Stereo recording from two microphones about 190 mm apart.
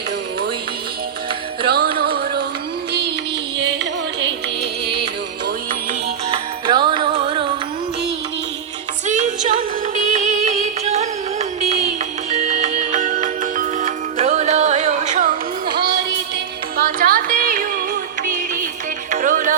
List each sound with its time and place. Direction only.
1.6 s music: 55° right (ahead or behind)
6.3 s music: 25° right (ahead or behind)
9.0 s music: 40° right (ahead or behind)
16.7 s music: 50° right (ahead or behind)
19.1 s music: 40° right (ahead or behind)